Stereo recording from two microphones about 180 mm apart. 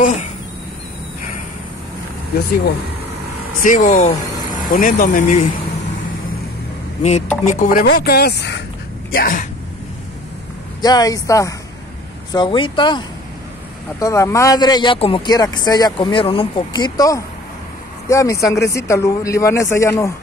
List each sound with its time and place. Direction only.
0.0 s speech: 40° left (ahead or behind)
3.6 s speech: 45° left (ahead or behind)
7.0 s speech: 40° left (ahead or behind)
7.8 s speech: 55° left (ahead or behind)
9.1 s speech: 55° left (ahead or behind)
10.8 s speech: 20° left (ahead or behind)